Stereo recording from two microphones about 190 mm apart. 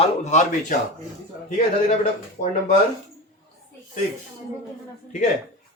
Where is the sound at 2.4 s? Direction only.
40° left (ahead or behind).